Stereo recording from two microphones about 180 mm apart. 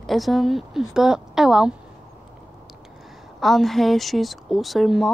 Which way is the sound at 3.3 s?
Centre (ahead or behind).